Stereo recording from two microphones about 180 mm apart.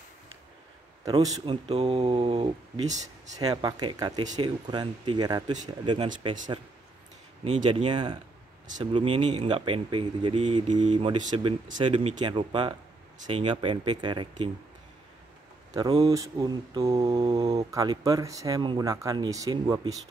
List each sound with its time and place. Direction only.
1.0 s speech: 20° right (ahead or behind)
7.4 s speech: 30° right (ahead or behind)
15.7 s speech: 20° right (ahead or behind)
17.1 s mantra: 30° right (ahead or behind)
17.6 s speech: 20° right (ahead or behind)